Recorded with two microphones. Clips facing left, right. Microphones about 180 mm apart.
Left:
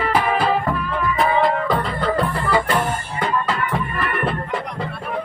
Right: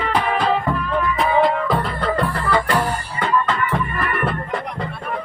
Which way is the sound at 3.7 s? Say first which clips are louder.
Right 1 dB; centre (ahead or behind).